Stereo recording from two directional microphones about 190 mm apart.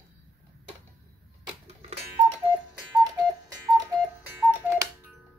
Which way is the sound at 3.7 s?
10° right (ahead or behind).